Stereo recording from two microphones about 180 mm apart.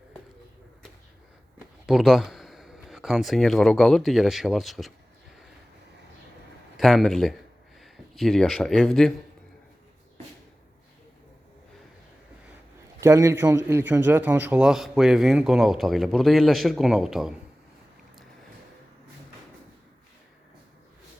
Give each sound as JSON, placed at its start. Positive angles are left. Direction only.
{"t": 1.9, "sound": "a man's voice", "side_deg": 0}
{"t": 6.7, "sound": "speech", "side_deg": 0}
{"t": 13.0, "sound": "a man's voice", "side_deg": -15}